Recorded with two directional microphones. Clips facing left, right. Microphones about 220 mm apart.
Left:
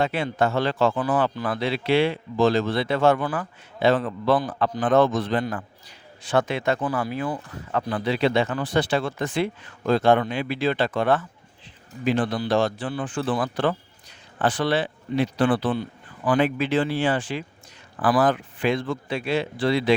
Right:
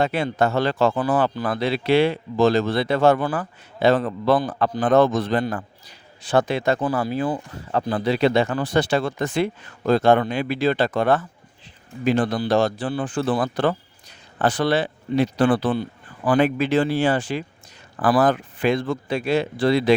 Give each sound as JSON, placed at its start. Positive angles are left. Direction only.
{"t": 0.0, "sound": "speech", "side_deg": -40}